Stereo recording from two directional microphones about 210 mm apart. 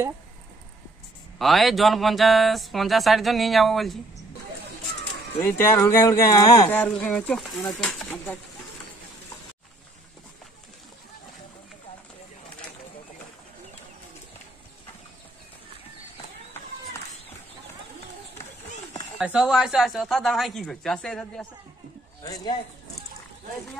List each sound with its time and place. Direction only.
1.4 s speech: centre (ahead or behind)
5.4 s speech: 10° left (ahead or behind)
19.1 s speech: 5° right (ahead or behind)
22.2 s speech: 20° left (ahead or behind)